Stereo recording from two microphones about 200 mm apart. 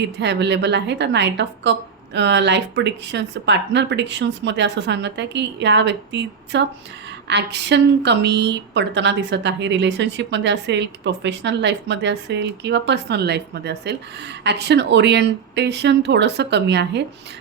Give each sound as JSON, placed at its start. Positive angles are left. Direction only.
{"t": 0.0, "sound": "speech", "side_deg": -60}